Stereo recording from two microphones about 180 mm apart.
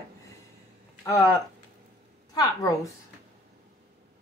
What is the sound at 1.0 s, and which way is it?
Speech, 15° left (ahead or behind).